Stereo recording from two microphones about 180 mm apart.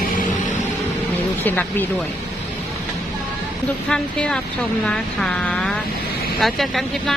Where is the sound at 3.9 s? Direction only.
5° left (ahead or behind).